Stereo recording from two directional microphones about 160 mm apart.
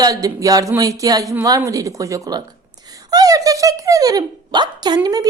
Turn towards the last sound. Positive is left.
turn(degrees=-25)  # may be behind; listen again after turning